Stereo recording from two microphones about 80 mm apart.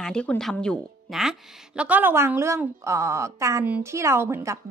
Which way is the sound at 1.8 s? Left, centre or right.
Right.